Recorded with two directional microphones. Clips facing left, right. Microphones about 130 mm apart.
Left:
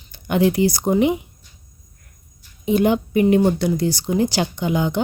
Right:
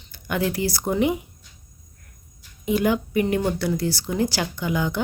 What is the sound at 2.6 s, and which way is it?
A woman's voice, 25° left (ahead or behind).